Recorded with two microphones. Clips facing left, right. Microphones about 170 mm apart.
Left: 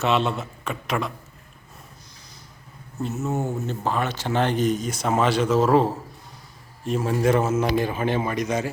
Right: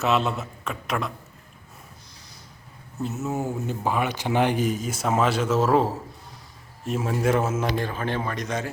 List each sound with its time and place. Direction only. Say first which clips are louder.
0.0 s speech: left 1 dB; centre (ahead or behind)
3.0 s speech: left 1 dB; 5° right (ahead or behind)
7.7 s speech: left 4 dB; 10° left (ahead or behind)